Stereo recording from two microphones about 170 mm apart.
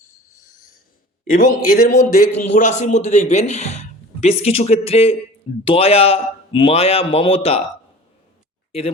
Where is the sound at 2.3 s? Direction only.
40° left (ahead or behind).